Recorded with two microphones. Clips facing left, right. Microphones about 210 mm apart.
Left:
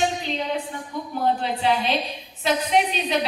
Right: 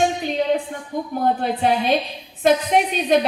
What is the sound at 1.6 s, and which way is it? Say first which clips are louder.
A woman's voice: right 4 dB; 50° right (ahead or behind).